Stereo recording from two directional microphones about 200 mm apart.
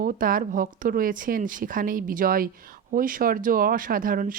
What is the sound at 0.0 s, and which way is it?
Speech, 45° right (ahead or behind).